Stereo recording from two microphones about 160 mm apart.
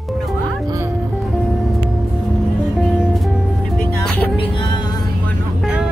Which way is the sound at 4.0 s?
5° left (ahead or behind).